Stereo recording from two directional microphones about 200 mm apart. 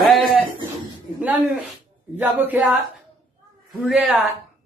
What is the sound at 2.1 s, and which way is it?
Speech, 10° right (ahead or behind).